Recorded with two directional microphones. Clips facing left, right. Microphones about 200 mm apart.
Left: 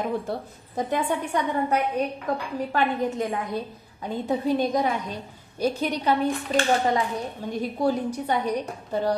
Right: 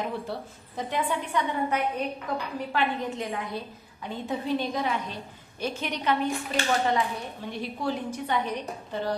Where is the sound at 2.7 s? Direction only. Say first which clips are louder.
Left 4 dB; 45° left (ahead or behind).